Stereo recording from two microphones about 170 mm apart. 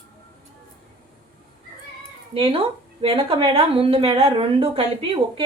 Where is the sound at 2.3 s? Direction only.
30° right (ahead or behind).